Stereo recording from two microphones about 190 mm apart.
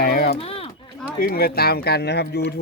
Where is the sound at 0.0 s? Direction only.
50° left (ahead or behind).